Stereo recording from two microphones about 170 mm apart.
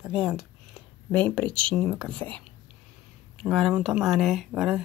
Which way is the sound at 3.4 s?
5° right (ahead or behind).